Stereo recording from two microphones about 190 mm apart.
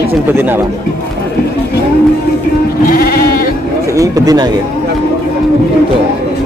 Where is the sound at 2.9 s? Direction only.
50° left (ahead or behind).